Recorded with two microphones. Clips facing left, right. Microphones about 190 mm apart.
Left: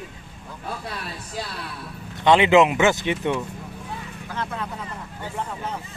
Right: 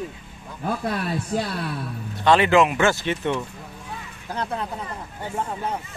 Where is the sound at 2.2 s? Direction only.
20° left (ahead or behind).